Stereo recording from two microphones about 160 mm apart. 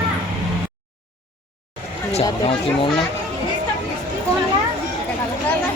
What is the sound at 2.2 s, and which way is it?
Speech, 35° left (ahead or behind).